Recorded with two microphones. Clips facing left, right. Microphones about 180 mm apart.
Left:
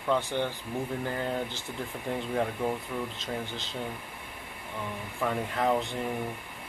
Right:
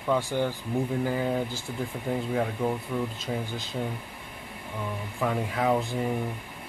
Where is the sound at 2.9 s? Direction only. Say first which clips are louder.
Right 4 dB; centre (ahead or behind).